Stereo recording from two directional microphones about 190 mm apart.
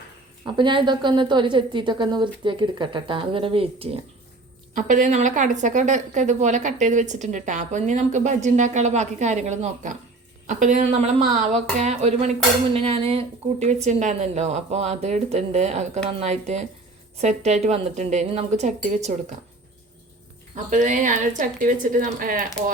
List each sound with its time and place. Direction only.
0.4 s a woman's voice: 25° right (ahead or behind)
4.7 s a woman's voice: 45° right (ahead or behind)
20.7 s a woman's voice: 40° right (ahead or behind)